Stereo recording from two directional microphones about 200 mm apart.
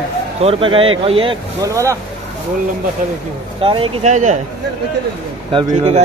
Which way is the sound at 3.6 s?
25° right (ahead or behind).